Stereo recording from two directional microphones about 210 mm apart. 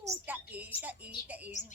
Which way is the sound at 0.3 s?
10° right (ahead or behind).